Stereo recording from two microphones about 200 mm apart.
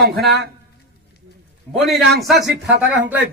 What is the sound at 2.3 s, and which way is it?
Speech, 60° right (ahead or behind).